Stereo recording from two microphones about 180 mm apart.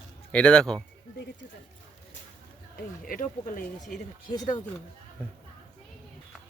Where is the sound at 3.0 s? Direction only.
50° left (ahead or behind).